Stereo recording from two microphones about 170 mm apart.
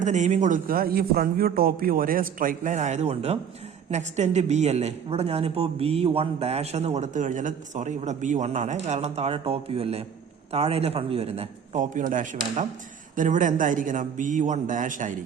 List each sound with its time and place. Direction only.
0.0 s a man's voice: 45° right (ahead or behind)